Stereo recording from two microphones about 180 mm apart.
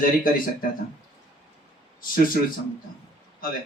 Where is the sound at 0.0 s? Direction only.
50° left (ahead or behind).